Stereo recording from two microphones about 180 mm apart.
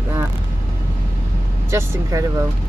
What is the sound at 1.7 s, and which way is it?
Speech, 15° right (ahead or behind).